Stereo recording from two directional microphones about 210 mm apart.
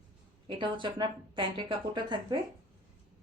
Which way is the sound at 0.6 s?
20° right (ahead or behind).